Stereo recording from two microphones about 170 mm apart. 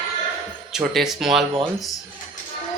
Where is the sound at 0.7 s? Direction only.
Centre (ahead or behind).